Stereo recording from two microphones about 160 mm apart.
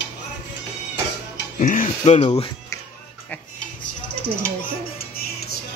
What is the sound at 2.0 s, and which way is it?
Speech, 40° left (ahead or behind).